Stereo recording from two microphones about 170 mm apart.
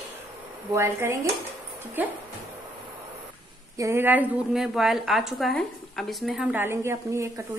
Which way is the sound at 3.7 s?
15° right (ahead or behind).